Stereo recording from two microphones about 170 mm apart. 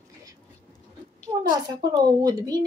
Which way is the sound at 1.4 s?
25° right (ahead or behind).